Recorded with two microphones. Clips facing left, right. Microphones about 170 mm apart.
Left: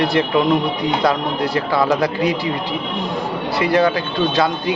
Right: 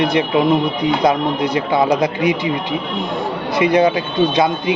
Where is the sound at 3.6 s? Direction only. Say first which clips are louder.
Right 3 dB; 20° right (ahead or behind).